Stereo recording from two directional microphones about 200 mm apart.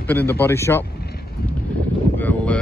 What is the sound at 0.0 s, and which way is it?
Speech, 10° left (ahead or behind).